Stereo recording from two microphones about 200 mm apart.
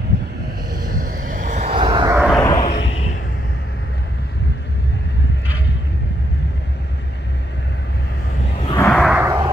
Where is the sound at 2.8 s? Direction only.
75° left (ahead or behind).